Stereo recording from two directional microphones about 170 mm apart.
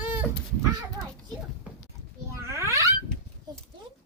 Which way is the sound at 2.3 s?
15° right (ahead or behind).